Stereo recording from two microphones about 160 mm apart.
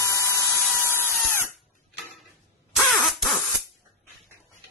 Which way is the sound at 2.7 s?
Centre (ahead or behind).